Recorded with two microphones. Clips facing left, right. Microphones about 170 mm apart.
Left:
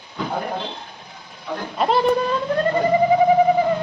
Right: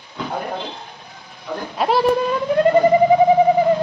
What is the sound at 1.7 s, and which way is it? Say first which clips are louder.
Speech: right 1 dB; 5° right (ahead or behind).